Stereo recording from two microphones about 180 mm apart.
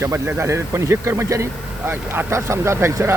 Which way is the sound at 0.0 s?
15° right (ahead or behind).